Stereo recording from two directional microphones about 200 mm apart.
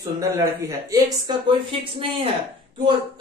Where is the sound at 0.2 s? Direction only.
15° right (ahead or behind).